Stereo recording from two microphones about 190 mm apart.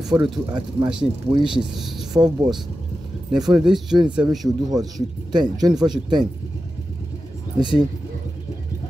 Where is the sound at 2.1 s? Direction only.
20° right (ahead or behind).